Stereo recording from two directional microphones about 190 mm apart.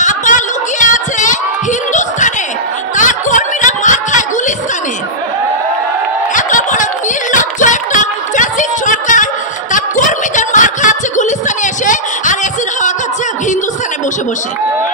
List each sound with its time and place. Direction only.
0.0 s a sound: 40° left (ahead or behind)
3.0 s chuckle: 40° left (ahead or behind)
6.3 s snicker: 40° left (ahead or behind)